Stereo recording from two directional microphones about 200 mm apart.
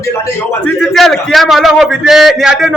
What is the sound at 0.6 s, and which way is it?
A man's voice, centre (ahead or behind).